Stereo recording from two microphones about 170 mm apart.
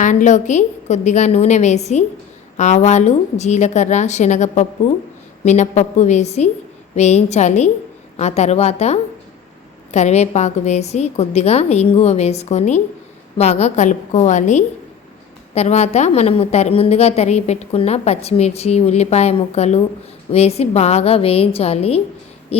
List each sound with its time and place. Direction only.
0.0 s a woman's voice: 45° left (ahead or behind)